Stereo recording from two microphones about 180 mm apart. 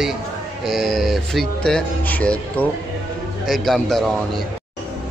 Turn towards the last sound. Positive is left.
turn(degrees=0)  # may be behind; listen again after turning